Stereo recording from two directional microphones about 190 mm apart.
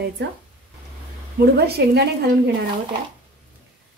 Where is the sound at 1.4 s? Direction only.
55° right (ahead or behind).